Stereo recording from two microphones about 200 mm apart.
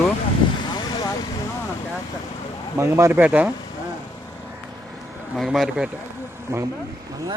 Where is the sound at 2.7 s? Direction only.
15° right (ahead or behind).